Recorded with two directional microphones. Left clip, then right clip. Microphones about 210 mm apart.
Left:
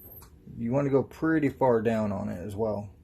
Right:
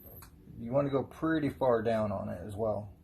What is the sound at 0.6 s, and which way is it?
Speech, 45° left (ahead or behind).